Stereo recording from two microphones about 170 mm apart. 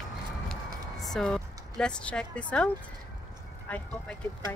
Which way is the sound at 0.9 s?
Centre (ahead or behind).